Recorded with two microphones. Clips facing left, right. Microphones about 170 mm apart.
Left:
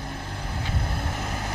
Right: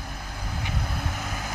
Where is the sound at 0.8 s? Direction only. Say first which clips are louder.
Left 1 dB; 25° left (ahead or behind).